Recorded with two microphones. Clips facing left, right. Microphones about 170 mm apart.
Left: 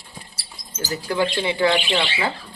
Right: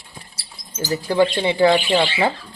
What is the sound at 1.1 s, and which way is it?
Speech, 30° right (ahead or behind).